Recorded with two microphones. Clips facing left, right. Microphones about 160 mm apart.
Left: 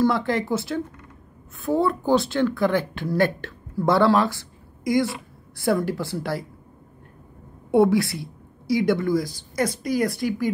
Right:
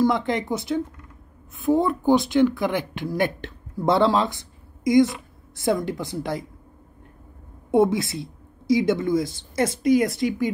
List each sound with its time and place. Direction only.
0.0 s speech: 20° right (ahead or behind)
7.7 s speech: 20° right (ahead or behind)